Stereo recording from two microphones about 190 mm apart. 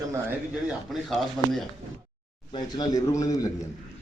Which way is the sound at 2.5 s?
20° left (ahead or behind).